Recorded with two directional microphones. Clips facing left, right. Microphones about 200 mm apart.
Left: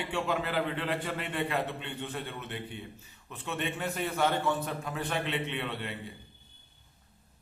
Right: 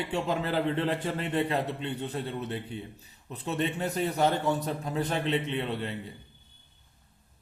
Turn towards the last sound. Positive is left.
turn(degrees=-40)  # may be behind; listen again after turning